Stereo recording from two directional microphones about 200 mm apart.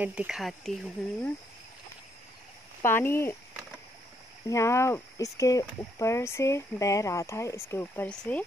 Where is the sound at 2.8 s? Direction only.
10° left (ahead or behind).